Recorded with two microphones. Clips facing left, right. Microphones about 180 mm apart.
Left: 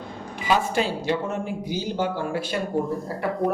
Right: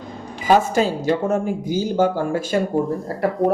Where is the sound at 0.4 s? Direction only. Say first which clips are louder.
Right 6 dB; 45° right (ahead or behind).